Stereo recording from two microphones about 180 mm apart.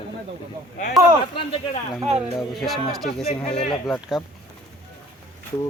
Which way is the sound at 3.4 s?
35° left (ahead or behind).